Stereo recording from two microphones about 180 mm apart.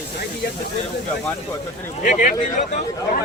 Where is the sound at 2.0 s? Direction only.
45° left (ahead or behind).